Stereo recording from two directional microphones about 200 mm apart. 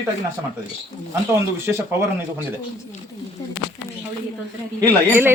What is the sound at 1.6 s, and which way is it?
Speech, 10° right (ahead or behind).